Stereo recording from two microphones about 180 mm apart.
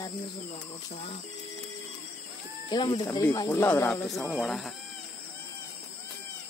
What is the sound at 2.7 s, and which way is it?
Speech, 25° left (ahead or behind).